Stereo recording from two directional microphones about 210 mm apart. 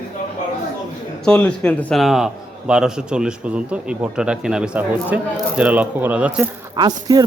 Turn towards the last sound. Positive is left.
turn(degrees=-20)  # may be behind; listen again after turning